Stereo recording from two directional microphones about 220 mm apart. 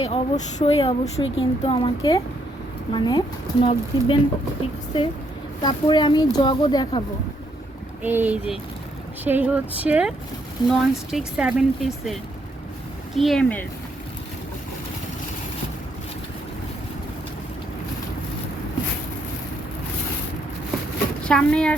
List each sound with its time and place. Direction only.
0.0 s speech: 30° left (ahead or behind)
5.6 s speech: 20° left (ahead or behind)
8.0 s speech: 10° right (ahead or behind)
13.1 s speech: centre (ahead or behind)
21.2 s speech: 5° left (ahead or behind)